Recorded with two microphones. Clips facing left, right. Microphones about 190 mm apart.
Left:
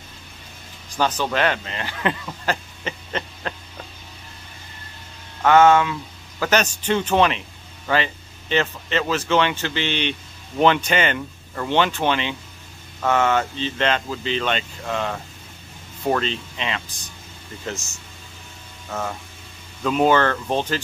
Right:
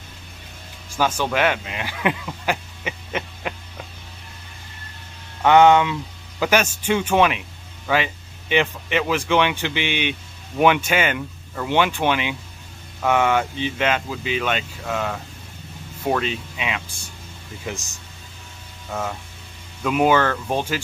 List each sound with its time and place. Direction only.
0.9 s speech: 10° right (ahead or behind)
5.4 s speech: 15° right (ahead or behind)
18.9 s speech: 5° right (ahead or behind)